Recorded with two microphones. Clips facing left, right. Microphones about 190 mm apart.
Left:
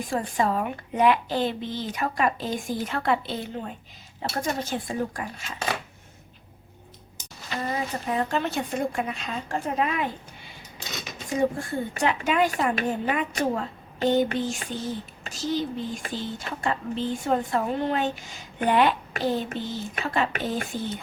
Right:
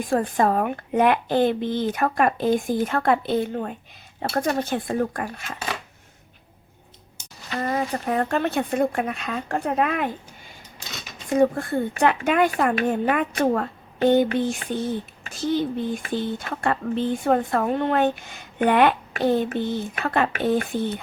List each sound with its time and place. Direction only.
0.1 s a woman's voice: 50° right (ahead or behind)
7.6 s speech: 55° right (ahead or behind)
11.3 s speech: 60° right (ahead or behind)